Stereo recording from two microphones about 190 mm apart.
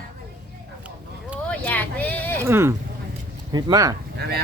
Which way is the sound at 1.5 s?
5° left (ahead or behind).